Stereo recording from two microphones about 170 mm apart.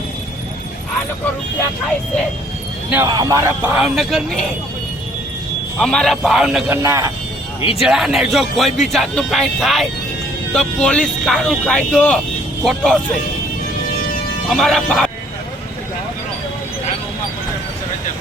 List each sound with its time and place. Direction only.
3.1 s a man's voice: 20° right (ahead or behind)
3.6 s speech: 5° right (ahead or behind)
5.8 s speech: 5° left (ahead or behind)
6.8 s speech: 15° right (ahead or behind)
7.8 s speech: centre (ahead or behind)
14.5 s speech: centre (ahead or behind)